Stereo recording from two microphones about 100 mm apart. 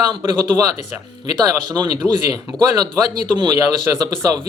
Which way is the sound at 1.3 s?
45° right (ahead or behind).